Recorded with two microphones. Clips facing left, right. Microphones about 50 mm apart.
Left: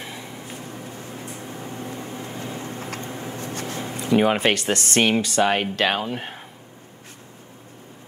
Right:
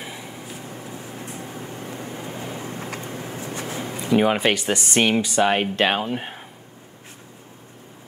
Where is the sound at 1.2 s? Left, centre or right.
Right.